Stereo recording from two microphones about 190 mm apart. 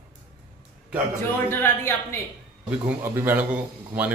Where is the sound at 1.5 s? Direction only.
10° left (ahead or behind).